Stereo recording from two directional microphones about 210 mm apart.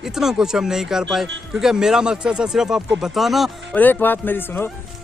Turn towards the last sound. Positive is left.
turn(degrees=10)  # may be behind; listen again after turning